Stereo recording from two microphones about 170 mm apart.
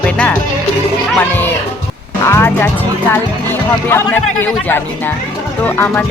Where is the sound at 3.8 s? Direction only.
15° left (ahead or behind).